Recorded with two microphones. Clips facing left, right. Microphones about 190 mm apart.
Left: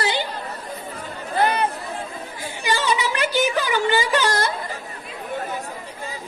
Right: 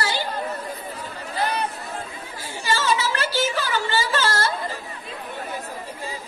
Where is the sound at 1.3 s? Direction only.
55° left (ahead or behind).